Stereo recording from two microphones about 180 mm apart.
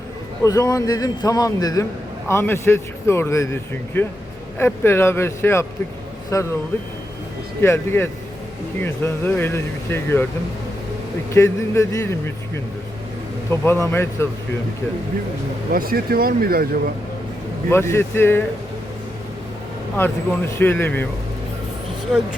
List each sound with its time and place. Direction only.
0.4 s a man's voice: 20° left (ahead or behind)
7.6 s a man's voice: 15° left (ahead or behind)
11.3 s a man's voice: 15° left (ahead or behind)
13.5 s a man's voice: 15° left (ahead or behind)
15.7 s speech: 55° right (ahead or behind)
17.7 s a man's voice: 15° left (ahead or behind)
20.0 s a man's voice: 10° left (ahead or behind)
22.1 s speech: 5° right (ahead or behind)